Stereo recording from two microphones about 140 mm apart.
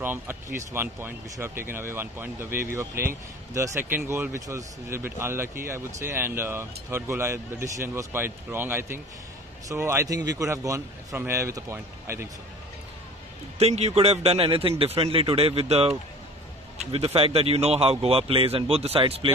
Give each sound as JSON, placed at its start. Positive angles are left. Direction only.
{"t": 0.0, "sound": "speech", "side_deg": -15}
{"t": 13.6, "sound": "a man's voice", "side_deg": -50}